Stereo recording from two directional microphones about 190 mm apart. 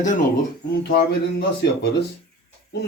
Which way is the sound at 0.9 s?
60° left (ahead or behind).